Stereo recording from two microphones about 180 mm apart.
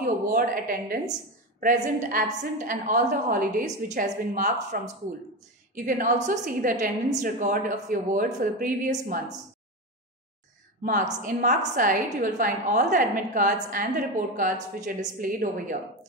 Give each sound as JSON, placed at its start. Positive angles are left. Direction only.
{"t": 0.0, "sound": "a woman's voice", "side_deg": -55}
{"t": 10.8, "sound": "a woman's voice", "side_deg": -50}